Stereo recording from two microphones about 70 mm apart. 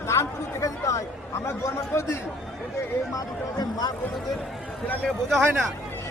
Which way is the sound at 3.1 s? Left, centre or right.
Left.